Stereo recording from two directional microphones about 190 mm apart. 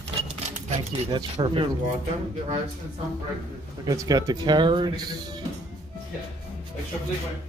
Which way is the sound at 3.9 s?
20° right (ahead or behind).